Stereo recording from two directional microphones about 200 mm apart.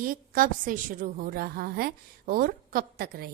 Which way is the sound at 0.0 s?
45° right (ahead or behind).